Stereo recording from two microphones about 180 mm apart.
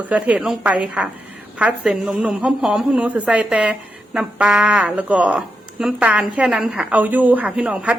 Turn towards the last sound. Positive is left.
turn(degrees=-10)  # may be behind; listen again after turning